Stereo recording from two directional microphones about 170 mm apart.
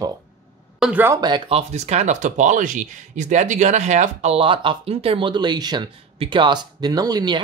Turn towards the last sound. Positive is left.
turn(degrees=-25)  # may be behind; listen again after turning